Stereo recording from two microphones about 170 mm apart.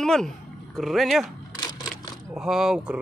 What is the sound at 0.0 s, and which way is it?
Speech, 5° left (ahead or behind).